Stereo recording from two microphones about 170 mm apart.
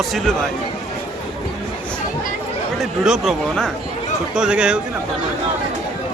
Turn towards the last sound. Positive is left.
turn(degrees=-5)  # may be behind; listen again after turning